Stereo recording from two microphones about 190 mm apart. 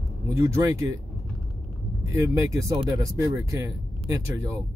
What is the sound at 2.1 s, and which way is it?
Speech, 15° right (ahead or behind).